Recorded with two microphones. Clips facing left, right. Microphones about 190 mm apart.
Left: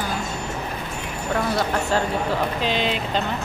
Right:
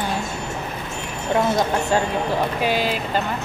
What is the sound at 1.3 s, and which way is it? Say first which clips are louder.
Speech: right 4 dB; 20° right (ahead or behind).